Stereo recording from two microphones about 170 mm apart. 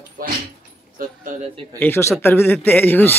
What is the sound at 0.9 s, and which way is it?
Speech, 50° right (ahead or behind).